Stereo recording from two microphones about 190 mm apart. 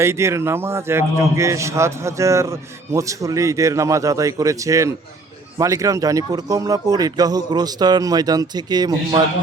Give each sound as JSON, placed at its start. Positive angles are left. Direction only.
{"t": 0.0, "sound": "a man's voice", "side_deg": -15}